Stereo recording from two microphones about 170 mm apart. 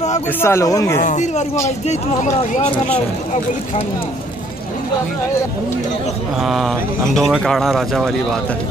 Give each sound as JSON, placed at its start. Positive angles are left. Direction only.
{"t": 0.4, "sound": "speech", "side_deg": 15}
{"t": 0.9, "sound": "speech", "side_deg": 45}
{"t": 6.4, "sound": "speech", "side_deg": 0}